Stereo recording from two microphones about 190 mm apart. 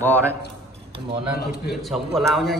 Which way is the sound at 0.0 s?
10° left (ahead or behind).